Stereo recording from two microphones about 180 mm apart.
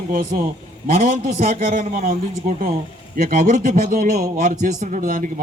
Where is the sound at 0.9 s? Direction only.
45° right (ahead or behind).